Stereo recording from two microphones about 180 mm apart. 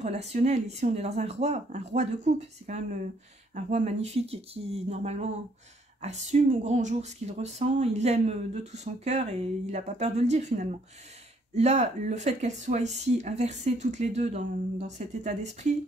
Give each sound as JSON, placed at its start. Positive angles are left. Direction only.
{"t": 0.0, "sound": "speech", "side_deg": -40}